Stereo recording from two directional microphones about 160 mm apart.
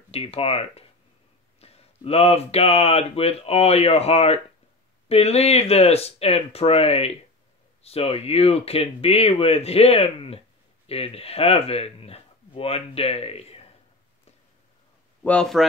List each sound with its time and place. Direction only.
0.1 s speech: 40° left (ahead or behind)
15.2 s speech: 5° left (ahead or behind)